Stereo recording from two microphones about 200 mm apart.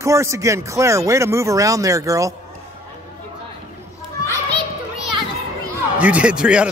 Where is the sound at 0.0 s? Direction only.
15° right (ahead or behind).